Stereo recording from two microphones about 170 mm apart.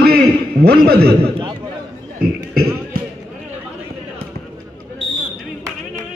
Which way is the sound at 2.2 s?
65° right (ahead or behind).